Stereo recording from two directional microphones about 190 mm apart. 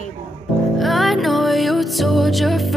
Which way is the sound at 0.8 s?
Centre (ahead or behind).